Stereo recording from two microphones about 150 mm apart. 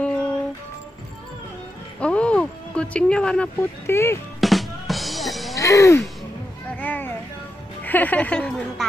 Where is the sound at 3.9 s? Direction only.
15° left (ahead or behind).